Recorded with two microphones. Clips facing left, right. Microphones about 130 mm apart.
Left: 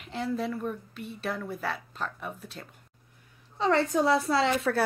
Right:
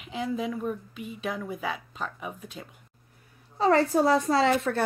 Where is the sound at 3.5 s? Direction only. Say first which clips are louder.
Right 3 dB; 35° right (ahead or behind).